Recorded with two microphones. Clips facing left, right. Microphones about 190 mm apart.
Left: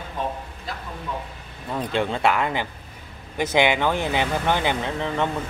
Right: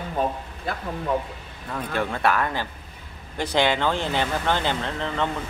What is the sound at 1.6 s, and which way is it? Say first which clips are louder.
Speech: left 3 dB; 20° left (ahead or behind).